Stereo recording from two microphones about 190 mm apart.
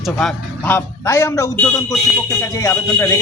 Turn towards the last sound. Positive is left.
turn(degrees=15)  # may be behind; listen again after turning